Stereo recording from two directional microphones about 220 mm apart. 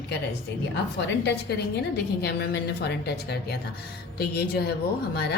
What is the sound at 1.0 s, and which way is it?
A woman's voice, 50° left (ahead or behind).